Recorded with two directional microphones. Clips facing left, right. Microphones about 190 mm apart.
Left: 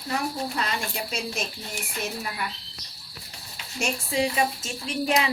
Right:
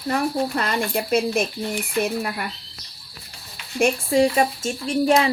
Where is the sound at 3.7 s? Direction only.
55° right (ahead or behind).